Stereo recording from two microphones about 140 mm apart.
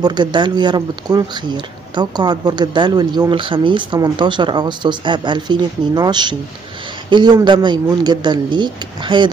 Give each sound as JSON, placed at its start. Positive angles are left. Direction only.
{"t": 0.0, "sound": "speech", "side_deg": -30}